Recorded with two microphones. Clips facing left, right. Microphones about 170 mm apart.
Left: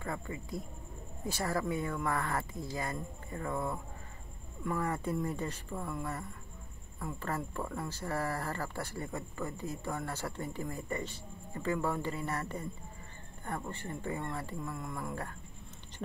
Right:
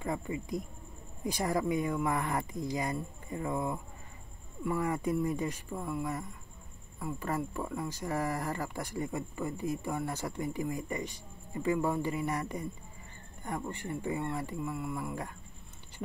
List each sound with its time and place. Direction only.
0.0 s speech: 15° right (ahead or behind)